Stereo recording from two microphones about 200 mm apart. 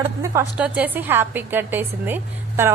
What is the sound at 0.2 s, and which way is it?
A man's voice, 10° right (ahead or behind).